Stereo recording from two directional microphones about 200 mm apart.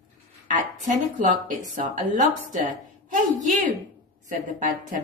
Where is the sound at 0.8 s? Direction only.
40° right (ahead or behind).